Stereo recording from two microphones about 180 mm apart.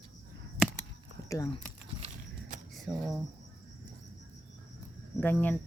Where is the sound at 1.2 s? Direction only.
20° left (ahead or behind).